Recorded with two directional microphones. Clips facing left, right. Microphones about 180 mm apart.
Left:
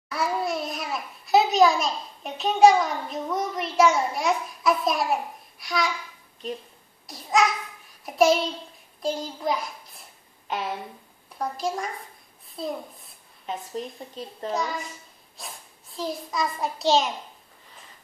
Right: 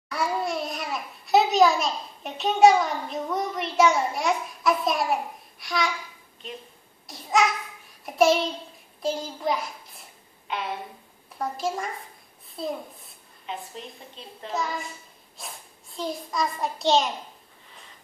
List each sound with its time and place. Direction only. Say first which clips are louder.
0.1 s a child's voice: left 1 dB; centre (ahead or behind)
7.1 s a child's voice: even; centre (ahead or behind)
11.3 s a child's voice: even; centre (ahead or behind)
13.5 s a woman's voice: left 4 dB; 40° left (ahead or behind)
14.5 s a child's voice: even; centre (ahead or behind)